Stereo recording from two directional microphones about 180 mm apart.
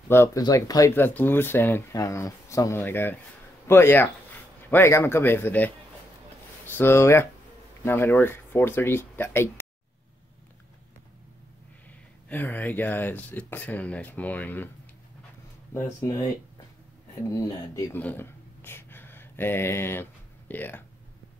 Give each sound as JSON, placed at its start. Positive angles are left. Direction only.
{"t": 0.1, "sound": "speech", "side_deg": 15}
{"t": 12.3, "sound": "speech", "side_deg": 10}
{"t": 15.7, "sound": "speech", "side_deg": 15}
{"t": 17.3, "sound": "speech", "side_deg": 15}